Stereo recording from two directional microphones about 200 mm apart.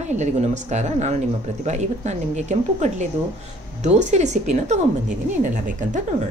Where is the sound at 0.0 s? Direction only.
35° right (ahead or behind).